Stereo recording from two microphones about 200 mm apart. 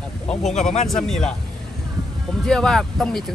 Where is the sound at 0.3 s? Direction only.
Centre (ahead or behind).